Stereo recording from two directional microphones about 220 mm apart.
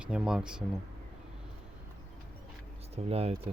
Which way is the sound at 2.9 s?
25° right (ahead or behind).